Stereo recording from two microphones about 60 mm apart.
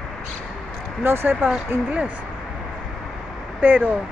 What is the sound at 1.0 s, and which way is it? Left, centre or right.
Speech, right.